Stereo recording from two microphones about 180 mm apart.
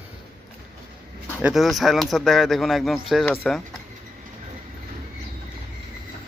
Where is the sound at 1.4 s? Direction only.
Centre (ahead or behind).